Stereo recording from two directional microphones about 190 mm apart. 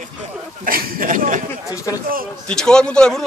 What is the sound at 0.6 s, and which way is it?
Speech, 50° right (ahead or behind).